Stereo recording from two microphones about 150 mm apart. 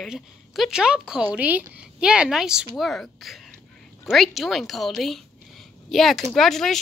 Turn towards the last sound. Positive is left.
turn(degrees=0)  # may be behind; listen again after turning